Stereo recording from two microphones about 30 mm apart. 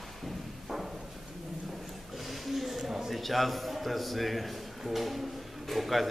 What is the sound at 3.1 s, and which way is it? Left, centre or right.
A man's voice, centre.